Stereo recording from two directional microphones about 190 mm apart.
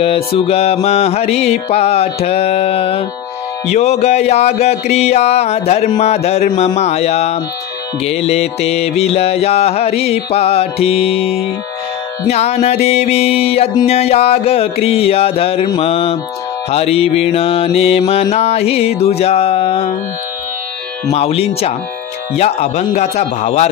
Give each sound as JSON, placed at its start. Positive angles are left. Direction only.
{"t": 0.0, "sound": "mantra", "side_deg": 30}
{"t": 21.1, "sound": "mantra", "side_deg": 30}